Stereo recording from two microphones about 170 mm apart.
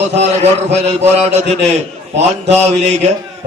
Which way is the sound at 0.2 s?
40° right (ahead or behind).